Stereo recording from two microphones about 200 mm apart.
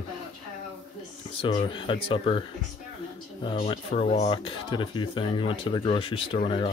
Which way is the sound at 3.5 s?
30° left (ahead or behind).